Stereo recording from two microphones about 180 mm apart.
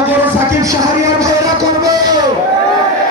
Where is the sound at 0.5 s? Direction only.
15° right (ahead or behind).